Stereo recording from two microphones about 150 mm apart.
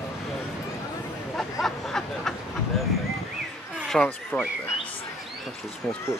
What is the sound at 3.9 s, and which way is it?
Speech, centre (ahead or behind).